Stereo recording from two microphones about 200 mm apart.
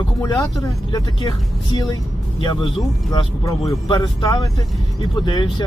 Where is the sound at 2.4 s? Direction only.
20° left (ahead or behind).